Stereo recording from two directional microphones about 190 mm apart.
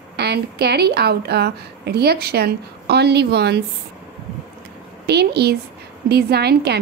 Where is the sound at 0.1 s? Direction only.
60° right (ahead or behind).